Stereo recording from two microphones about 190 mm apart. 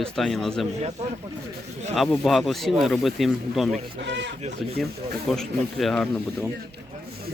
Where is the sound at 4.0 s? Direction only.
70° right (ahead or behind).